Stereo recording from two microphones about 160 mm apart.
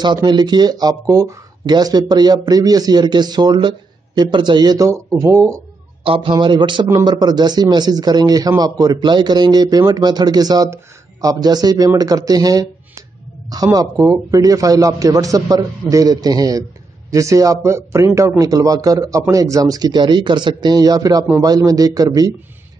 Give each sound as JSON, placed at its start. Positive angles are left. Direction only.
{"t": 0.0, "sound": "a man's voice", "side_deg": -25}
{"t": 6.0, "sound": "a man's voice", "side_deg": -35}